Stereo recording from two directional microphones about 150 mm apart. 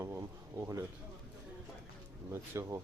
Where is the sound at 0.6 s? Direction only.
20° right (ahead or behind).